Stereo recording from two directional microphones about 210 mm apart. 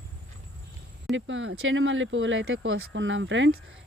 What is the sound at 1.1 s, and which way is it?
Speech, 60° right (ahead or behind).